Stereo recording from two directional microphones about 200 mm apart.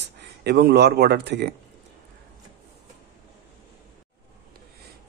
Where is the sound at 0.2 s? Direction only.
55° right (ahead or behind).